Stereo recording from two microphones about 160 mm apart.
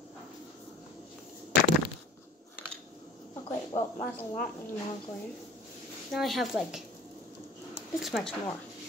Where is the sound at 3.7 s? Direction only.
35° left (ahead or behind).